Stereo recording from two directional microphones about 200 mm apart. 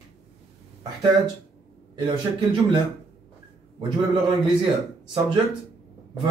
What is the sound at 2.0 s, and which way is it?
Speech, 25° right (ahead or behind).